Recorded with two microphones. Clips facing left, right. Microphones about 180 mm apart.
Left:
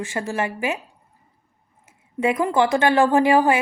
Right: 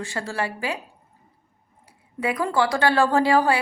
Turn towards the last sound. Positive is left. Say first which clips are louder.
# left 3 dB
turn(degrees=20)  # may be behind; listen again after turning